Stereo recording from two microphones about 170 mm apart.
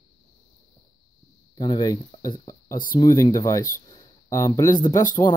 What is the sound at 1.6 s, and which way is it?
Speech, 25° left (ahead or behind).